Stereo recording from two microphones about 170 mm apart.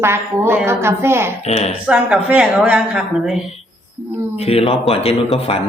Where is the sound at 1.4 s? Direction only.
40° left (ahead or behind).